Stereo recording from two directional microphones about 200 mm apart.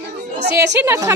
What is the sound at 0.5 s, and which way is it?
Speech, 15° right (ahead or behind).